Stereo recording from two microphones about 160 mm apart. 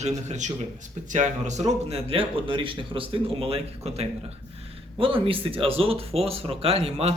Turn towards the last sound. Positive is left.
turn(degrees=-45)  # may be behind; listen again after turning